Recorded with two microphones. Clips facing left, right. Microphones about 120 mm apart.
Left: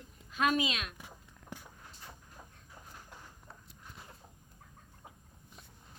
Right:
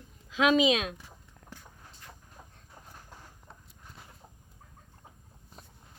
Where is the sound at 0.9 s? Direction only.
15° left (ahead or behind).